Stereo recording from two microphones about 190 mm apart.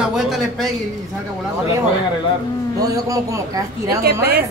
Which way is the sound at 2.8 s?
20° right (ahead or behind).